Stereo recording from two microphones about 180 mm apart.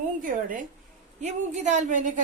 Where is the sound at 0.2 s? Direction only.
45° right (ahead or behind).